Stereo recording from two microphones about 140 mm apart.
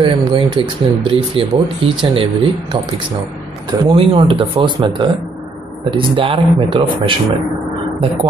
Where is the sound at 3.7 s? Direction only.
35° right (ahead or behind).